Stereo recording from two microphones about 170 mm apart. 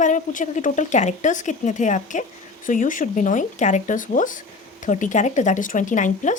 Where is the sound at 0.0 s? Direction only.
45° left (ahead or behind).